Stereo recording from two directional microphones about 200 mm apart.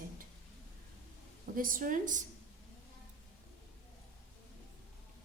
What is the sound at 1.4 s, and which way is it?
Speech, 45° right (ahead or behind).